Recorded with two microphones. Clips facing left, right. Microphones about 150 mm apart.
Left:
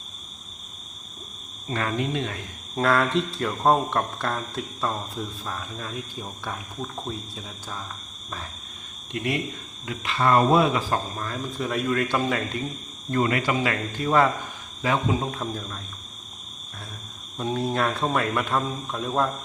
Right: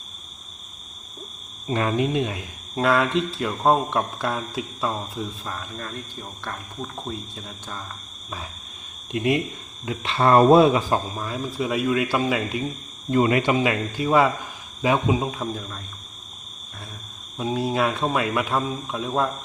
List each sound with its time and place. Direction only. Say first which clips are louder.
1.6 s speech: right 4 dB; 20° right (ahead or behind)
2.7 s speech: right 1 dB; centre (ahead or behind)
9.1 s speech: right 5 dB; 20° right (ahead or behind)
11.2 s speech: right 3 dB; 10° right (ahead or behind)
13.1 s speech: right 4 dB; 20° right (ahead or behind)
15.4 s speech: right 2 dB; centre (ahead or behind)
17.3 s speech: right 2 dB; 5° right (ahead or behind)